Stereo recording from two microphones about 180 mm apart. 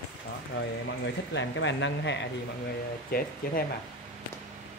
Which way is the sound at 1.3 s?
90° left.